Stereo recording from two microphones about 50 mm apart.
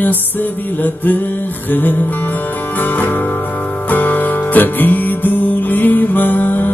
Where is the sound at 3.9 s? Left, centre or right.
Left.